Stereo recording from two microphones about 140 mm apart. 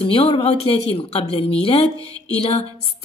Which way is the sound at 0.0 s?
45° left (ahead or behind).